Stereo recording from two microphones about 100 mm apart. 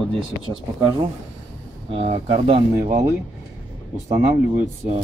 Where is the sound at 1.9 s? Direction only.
80° right.